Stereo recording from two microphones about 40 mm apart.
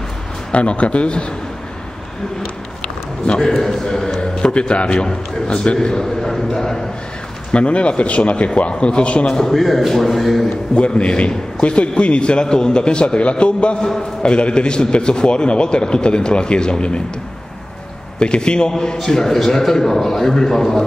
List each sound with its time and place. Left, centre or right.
0.5 s a man's voice: left
3.3 s a man's voice: centre
7.5 s a man's voice: left
9.3 s a man's voice: centre
9.6 s a man's voice: centre
10.7 s a man's voice: left
18.2 s a man's voice: left